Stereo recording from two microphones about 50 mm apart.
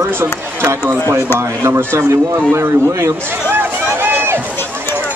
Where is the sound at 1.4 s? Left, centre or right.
Right.